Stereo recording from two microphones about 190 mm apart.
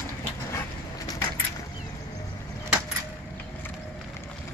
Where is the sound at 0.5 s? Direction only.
20° left (ahead or behind).